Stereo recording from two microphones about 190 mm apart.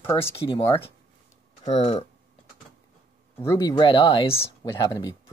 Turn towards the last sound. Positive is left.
turn(degrees=20)  # may be behind; listen again after turning